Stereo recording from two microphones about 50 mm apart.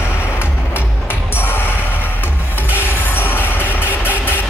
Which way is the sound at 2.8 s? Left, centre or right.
Left.